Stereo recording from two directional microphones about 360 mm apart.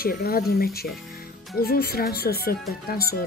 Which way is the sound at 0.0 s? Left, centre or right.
Left.